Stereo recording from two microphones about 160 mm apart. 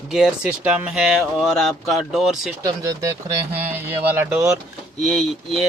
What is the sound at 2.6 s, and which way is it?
Speech, 25° right (ahead or behind).